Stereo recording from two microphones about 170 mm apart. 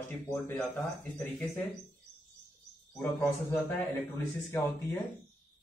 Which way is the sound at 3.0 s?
15° left (ahead or behind).